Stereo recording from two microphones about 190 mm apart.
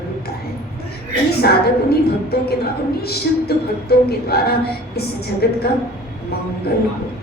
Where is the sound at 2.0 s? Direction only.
55° left (ahead or behind).